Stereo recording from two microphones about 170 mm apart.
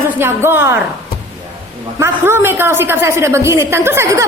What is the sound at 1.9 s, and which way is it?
A woman's voice, 15° right (ahead or behind).